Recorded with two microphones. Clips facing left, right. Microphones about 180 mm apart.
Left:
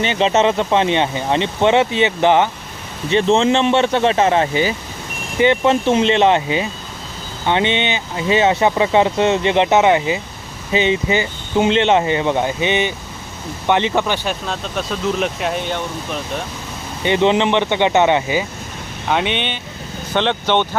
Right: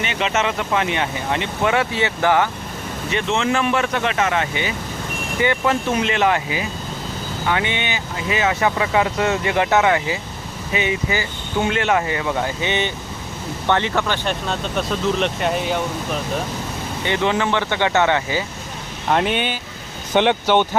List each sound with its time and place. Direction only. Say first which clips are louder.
0.0 s speech: left 6 dB; 30° left (ahead or behind)
14.3 s speech: even; centre (ahead or behind)
17.1 s speech: left 5 dB; 20° left (ahead or behind)
19.0 s speech: even; centre (ahead or behind)